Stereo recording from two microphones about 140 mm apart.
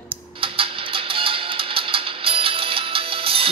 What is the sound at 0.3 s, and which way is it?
Music, 40° right (ahead or behind).